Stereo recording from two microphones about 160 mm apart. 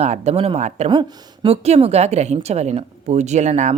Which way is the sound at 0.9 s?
30° right (ahead or behind).